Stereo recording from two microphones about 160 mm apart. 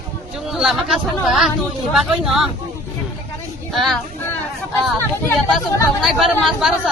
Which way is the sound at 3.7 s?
Centre (ahead or behind).